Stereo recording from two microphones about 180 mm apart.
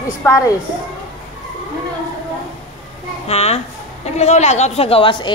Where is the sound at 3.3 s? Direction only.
35° left (ahead or behind).